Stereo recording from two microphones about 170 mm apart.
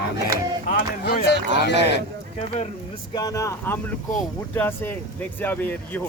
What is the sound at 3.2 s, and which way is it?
Speech, 20° left (ahead or behind).